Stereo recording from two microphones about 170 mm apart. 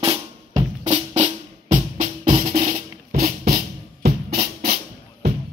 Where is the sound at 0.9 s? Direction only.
40° right (ahead or behind).